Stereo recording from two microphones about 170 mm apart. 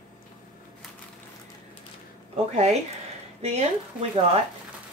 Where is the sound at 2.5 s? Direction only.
40° right (ahead or behind).